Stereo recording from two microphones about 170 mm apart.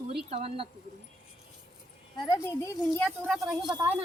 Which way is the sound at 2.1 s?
20° left (ahead or behind).